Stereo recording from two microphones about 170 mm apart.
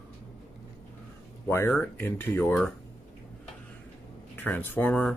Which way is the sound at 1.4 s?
10° left (ahead or behind).